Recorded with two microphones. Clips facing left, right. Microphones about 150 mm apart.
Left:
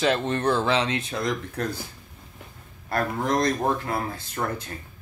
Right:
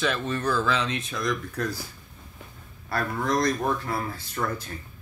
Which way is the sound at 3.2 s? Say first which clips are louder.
Left 1 dB; 20° left (ahead or behind).